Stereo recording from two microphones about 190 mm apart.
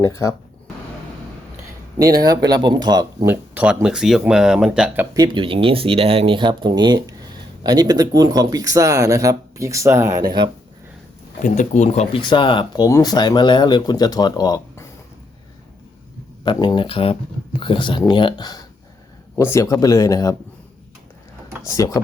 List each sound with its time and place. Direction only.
0.0 s speech: 15° left (ahead or behind)
2.0 s speech: 20° right (ahead or behind)
3.5 s speech: 10° right (ahead or behind)
5.1 s speech: 20° right (ahead or behind)
11.4 s speech: 40° left (ahead or behind); by 14.8 s 20° left (ahead or behind)
16.4 s speech: 25° left (ahead or behind)
21.7 s speech: 15° left (ahead or behind)